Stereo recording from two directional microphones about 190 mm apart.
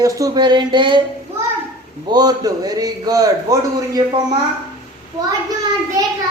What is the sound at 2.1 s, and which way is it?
A man's voice, 20° right (ahead or behind).